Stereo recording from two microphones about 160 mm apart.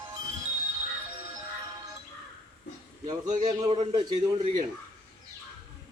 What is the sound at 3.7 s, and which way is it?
Speech, 35° right (ahead or behind).